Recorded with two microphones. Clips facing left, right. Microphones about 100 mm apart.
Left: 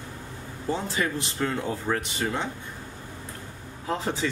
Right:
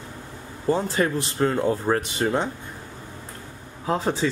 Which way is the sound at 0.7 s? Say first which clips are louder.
Right 6 dB; 45° right (ahead or behind).